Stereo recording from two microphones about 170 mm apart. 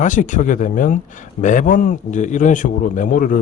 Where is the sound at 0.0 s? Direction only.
50° left (ahead or behind).